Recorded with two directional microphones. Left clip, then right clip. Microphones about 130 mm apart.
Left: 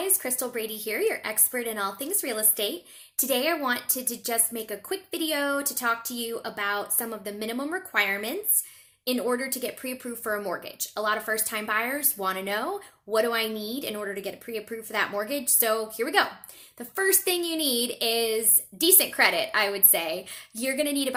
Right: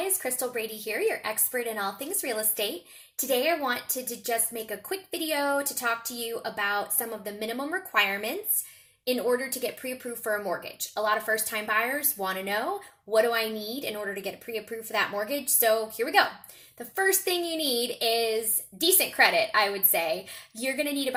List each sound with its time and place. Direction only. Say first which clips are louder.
0.2 s speech: even; 25° left (ahead or behind)